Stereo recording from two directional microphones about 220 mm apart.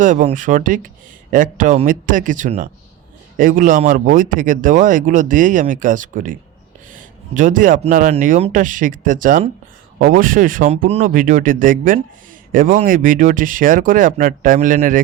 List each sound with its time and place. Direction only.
0.0 s speech: 35° right (ahead or behind)